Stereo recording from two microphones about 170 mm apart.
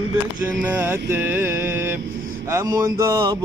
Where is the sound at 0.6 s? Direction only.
10° right (ahead or behind).